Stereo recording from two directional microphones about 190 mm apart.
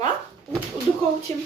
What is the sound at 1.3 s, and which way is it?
Speech, 35° right (ahead or behind).